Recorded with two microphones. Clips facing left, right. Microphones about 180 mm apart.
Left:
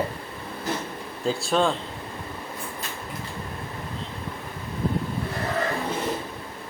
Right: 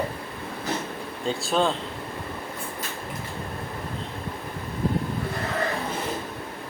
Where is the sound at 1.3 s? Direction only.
Centre (ahead or behind).